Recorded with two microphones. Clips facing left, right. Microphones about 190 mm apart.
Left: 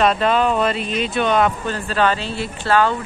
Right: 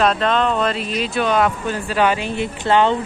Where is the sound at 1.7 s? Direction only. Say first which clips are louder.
Right 1 dB; 10° right (ahead or behind).